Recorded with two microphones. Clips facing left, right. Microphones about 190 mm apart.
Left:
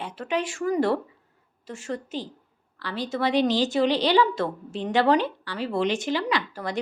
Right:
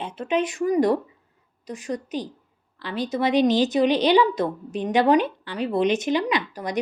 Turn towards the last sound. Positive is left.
turn(degrees=-15)  # may be behind; listen again after turning